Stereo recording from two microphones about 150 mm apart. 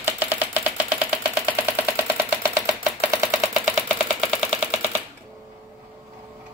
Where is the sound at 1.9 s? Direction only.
20° right (ahead or behind).